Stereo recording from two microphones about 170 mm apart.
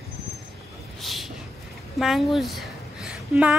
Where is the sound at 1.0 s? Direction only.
Centre (ahead or behind).